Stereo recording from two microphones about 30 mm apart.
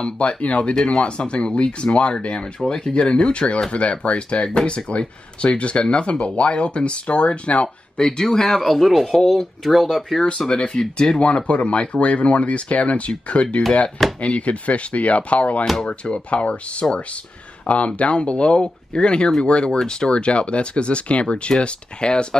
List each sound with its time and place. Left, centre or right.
0.4 s speech: left
1.0 s speech: left
2.6 s speech: left
3.0 s speech: left
7.6 s speech: left
8.6 s speech: centre
10.5 s speech: left
16.8 s speech: left
17.6 s speech: left
19.8 s speech: left
20.1 s speech: left